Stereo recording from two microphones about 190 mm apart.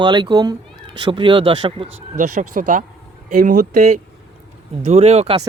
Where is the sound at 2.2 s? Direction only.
45° right (ahead or behind).